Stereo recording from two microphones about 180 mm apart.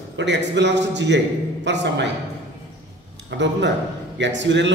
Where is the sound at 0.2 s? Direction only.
75° right (ahead or behind).